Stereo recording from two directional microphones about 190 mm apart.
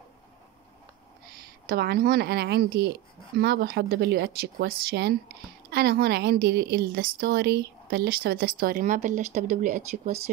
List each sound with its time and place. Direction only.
1.7 s a woman's voice: 55° right (ahead or behind)